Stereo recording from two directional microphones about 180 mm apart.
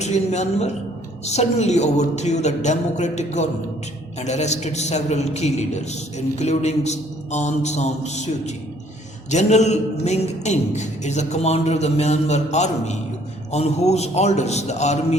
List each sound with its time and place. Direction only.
0.0 s a man's voice: 40° left (ahead or behind)